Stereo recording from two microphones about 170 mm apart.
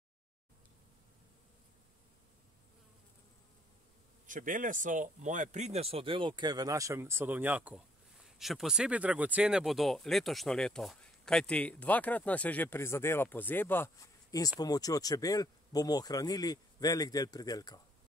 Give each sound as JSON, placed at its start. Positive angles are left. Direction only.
{"t": 4.3, "sound": "speech", "side_deg": -50}